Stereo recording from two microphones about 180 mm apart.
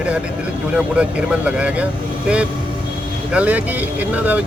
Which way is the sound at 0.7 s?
5° right (ahead or behind).